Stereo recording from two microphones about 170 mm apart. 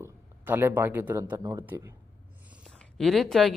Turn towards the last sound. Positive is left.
turn(degrees=0)  # may be behind; listen again after turning